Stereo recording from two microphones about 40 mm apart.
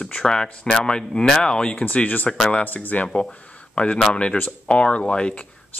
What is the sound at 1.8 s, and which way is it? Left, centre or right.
Speech, left.